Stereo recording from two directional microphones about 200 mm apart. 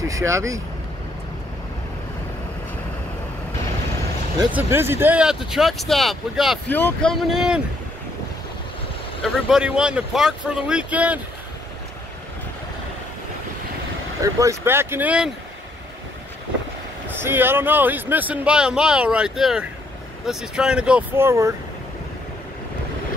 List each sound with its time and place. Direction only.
0.0 s speech: 15° right (ahead or behind)
4.5 s speech: 10° right (ahead or behind)
9.2 s speech: 5° right (ahead or behind)
14.2 s speech: 15° right (ahead or behind)
17.2 s speech: 10° right (ahead or behind)